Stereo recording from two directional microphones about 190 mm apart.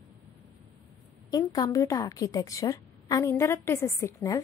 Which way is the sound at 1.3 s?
20° left (ahead or behind).